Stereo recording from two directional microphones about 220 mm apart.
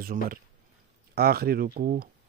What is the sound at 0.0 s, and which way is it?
Speech, 40° right (ahead or behind).